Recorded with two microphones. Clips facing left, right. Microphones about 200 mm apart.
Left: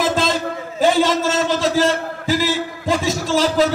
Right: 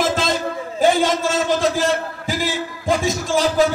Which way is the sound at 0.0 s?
45° right (ahead or behind).